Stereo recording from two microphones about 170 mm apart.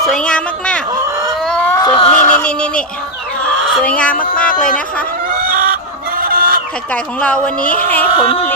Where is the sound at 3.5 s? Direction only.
5° left (ahead or behind).